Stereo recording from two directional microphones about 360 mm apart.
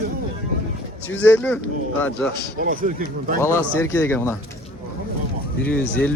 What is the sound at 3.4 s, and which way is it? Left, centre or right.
Speech, centre.